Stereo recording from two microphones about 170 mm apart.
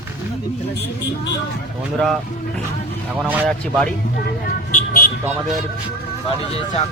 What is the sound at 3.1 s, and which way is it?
Speech, 10° right (ahead or behind).